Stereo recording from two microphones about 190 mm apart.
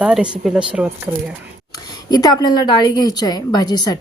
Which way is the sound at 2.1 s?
20° left (ahead or behind).